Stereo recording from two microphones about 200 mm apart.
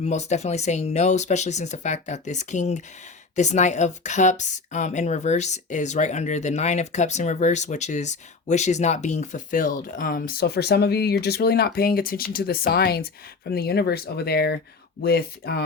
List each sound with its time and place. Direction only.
0.0 s a woman's voice: 35° left (ahead or behind); by 15.6 s 50° left (ahead or behind)